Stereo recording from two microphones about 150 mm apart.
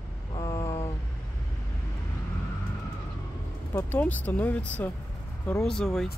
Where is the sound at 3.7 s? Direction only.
10° left (ahead or behind).